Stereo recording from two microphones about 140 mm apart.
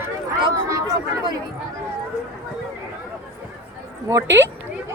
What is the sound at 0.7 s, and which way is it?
Speech, 25° right (ahead or behind).